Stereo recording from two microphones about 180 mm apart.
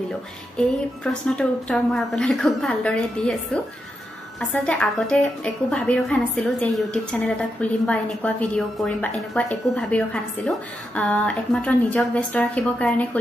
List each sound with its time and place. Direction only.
0.6 s a woman's voice: 5° left (ahead or behind)
4.4 s a woman's voice: 5° left (ahead or behind)